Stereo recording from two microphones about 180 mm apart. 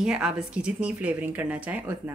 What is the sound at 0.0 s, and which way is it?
A woman's voice, 5° right (ahead or behind).